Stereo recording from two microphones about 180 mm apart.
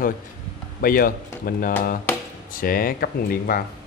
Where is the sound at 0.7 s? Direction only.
55° left (ahead or behind).